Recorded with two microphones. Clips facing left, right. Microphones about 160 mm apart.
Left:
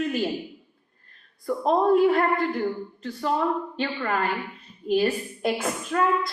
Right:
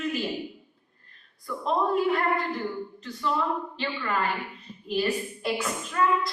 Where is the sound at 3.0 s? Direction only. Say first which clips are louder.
Left 4 dB; 50° left (ahead or behind).